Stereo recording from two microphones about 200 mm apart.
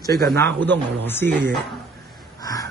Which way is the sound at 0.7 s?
10° left (ahead or behind).